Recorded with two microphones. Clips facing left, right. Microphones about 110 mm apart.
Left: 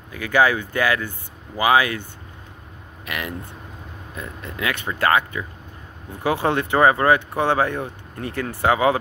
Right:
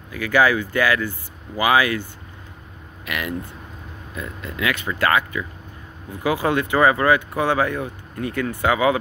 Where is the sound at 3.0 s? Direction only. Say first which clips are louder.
Right 3 dB; 30° left (ahead or behind).